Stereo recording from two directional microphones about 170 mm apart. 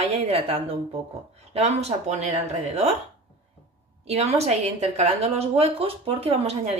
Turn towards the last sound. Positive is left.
turn(degrees=-35)  # may be behind; listen again after turning